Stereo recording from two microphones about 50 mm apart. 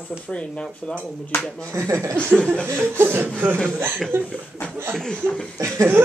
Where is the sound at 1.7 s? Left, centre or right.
Right.